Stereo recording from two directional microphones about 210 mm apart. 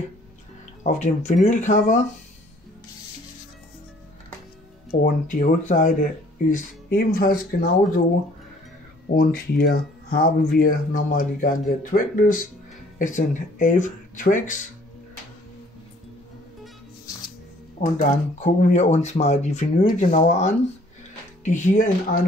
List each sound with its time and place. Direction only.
0.8 s speech: 35° left (ahead or behind)
5.0 s speech: 40° left (ahead or behind)
9.1 s speech: 45° left (ahead or behind)
18.0 s speech: 35° left (ahead or behind)